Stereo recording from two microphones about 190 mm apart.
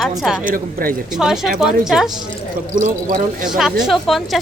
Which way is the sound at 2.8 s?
40° right (ahead or behind).